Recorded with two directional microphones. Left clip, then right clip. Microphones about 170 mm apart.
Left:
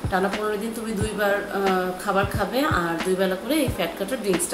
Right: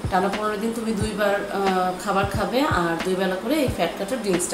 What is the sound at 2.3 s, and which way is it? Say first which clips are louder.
A woman's voice: right 1 dB; 10° left (ahead or behind).